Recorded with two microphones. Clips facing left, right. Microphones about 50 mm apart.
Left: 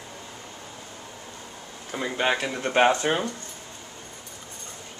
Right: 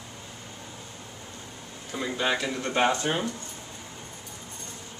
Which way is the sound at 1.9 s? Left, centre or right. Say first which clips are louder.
Left 2 dB; left.